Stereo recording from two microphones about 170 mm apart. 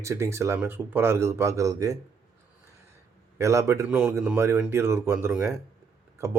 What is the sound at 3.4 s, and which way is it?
Speech, 15° right (ahead or behind).